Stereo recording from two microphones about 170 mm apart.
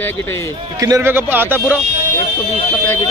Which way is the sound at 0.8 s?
20° right (ahead or behind).